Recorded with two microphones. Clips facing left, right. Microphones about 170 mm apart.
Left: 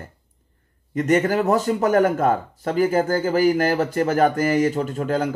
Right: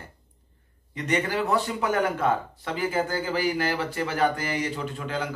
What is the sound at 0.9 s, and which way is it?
Speech, 45° left (ahead or behind).